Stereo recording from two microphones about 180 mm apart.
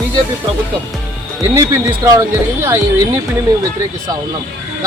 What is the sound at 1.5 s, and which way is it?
Speech, 20° right (ahead or behind).